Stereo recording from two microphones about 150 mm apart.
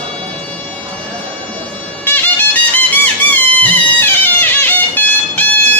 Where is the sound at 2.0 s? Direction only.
10° left (ahead or behind).